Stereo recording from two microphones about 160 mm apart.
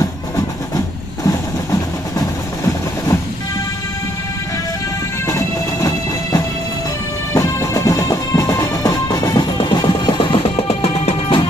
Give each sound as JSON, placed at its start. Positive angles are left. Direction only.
{"t": 1.2, "sound": "vehicle", "side_deg": 25}
{"t": 5.2, "sound": "music", "side_deg": 20}